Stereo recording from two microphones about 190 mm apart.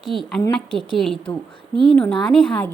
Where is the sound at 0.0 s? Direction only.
Centre (ahead or behind).